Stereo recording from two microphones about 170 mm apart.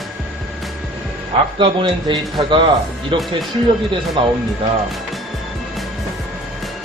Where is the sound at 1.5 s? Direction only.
30° right (ahead or behind).